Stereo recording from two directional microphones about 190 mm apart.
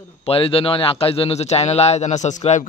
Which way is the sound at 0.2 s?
30° left (ahead or behind).